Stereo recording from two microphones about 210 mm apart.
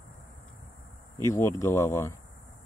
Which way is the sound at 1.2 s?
15° left (ahead or behind).